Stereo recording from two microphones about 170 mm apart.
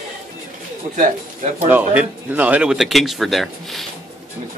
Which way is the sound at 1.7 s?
10° right (ahead or behind).